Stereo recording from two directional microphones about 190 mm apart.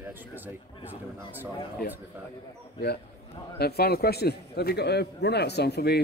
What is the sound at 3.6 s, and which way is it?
A man's voice, 55° left (ahead or behind).